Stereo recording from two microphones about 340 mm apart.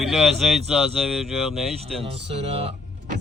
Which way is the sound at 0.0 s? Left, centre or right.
Centre.